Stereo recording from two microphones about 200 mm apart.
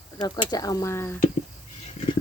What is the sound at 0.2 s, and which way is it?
Speech, 20° left (ahead or behind).